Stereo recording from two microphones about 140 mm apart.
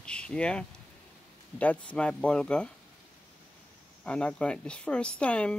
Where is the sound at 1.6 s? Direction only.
10° left (ahead or behind).